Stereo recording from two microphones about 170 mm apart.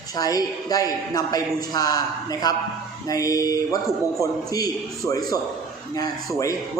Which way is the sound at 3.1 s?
20° left (ahead or behind).